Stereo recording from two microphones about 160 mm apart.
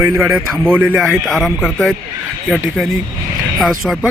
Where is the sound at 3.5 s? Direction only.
Centre (ahead or behind).